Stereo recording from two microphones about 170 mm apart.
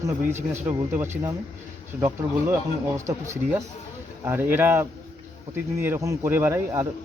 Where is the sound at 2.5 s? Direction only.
15° right (ahead or behind).